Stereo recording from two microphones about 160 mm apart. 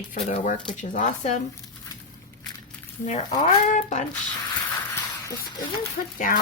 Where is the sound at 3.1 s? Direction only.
45° left (ahead or behind).